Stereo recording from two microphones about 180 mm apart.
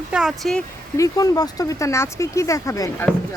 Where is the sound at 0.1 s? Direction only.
5° right (ahead or behind).